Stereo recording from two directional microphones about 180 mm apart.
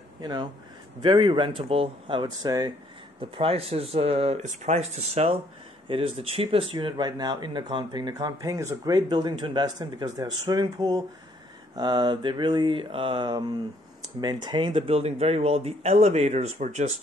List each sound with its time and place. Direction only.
0.2 s speech: 25° right (ahead or behind); by 17.0 s 40° right (ahead or behind)